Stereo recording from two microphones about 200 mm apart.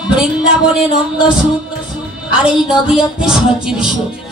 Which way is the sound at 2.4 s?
5° right (ahead or behind).